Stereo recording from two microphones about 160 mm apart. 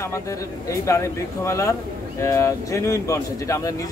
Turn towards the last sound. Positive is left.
turn(degrees=20)  # may be behind; listen again after turning